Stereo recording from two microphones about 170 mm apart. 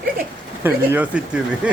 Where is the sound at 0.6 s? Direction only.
10° right (ahead or behind).